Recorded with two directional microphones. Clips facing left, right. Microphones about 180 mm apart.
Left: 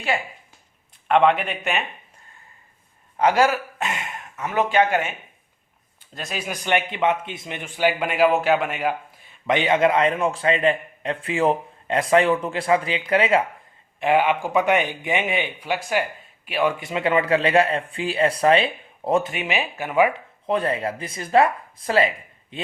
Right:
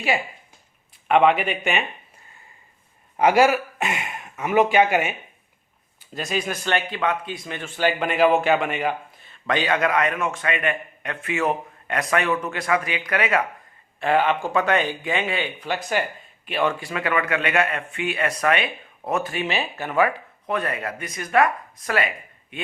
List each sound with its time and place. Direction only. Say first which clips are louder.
1.0 s speech: even; 5° right (ahead or behind)
3.2 s speech: right 2 dB; 10° right (ahead or behind)
6.1 s speech: right 5 dB; centre (ahead or behind)
6.5 s a man's voice: left 1 dB; 15° left (ahead or behind)
14.0 s speech: left 1 dB; 15° left (ahead or behind)
15.7 s speech: left 2 dB; 5° left (ahead or behind)
16.8 s a man's voice: left 3 dB; 25° left (ahead or behind)